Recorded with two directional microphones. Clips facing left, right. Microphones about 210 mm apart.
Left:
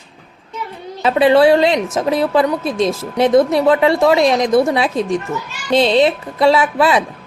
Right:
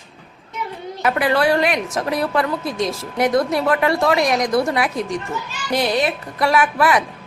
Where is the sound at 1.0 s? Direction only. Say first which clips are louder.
Left 7 dB; 25° left (ahead or behind).